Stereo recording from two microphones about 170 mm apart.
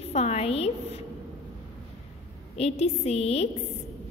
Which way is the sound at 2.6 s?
40° left (ahead or behind).